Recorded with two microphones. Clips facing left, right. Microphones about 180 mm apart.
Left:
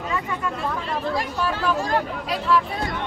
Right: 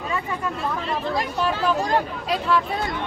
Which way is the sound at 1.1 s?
20° right (ahead or behind).